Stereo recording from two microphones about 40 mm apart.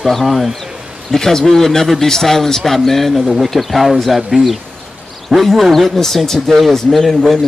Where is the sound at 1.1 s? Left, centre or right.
Centre.